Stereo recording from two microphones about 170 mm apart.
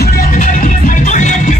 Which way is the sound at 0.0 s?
65° left (ahead or behind).